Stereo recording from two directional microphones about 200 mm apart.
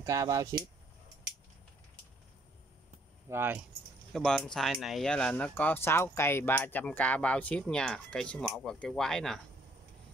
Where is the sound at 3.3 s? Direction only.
10° right (ahead or behind).